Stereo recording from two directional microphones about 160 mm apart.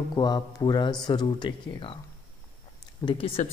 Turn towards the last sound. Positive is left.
turn(degrees=35)  # may be behind; listen again after turning